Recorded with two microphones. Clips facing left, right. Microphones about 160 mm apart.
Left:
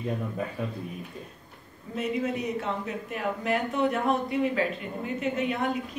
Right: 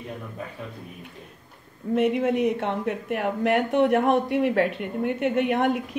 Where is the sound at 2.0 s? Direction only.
65° right (ahead or behind).